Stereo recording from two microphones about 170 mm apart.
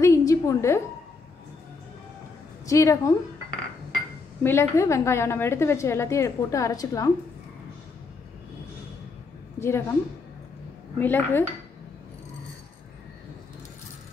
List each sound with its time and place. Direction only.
0.0 s a sound: 20° left (ahead or behind)
2.6 s a woman's voice: 20° left (ahead or behind)
4.4 s a woman's voice: 15° left (ahead or behind)
9.6 s a woman's voice: 15° left (ahead or behind)
11.0 s a woman's voice: 10° left (ahead or behind)